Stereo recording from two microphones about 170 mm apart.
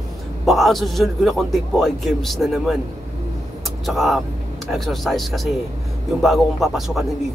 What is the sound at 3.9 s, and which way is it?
A man's voice, centre (ahead or behind).